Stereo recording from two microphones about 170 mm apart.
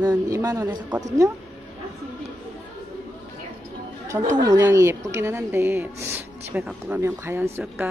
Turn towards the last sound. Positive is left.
turn(degrees=-15)  # may be behind; listen again after turning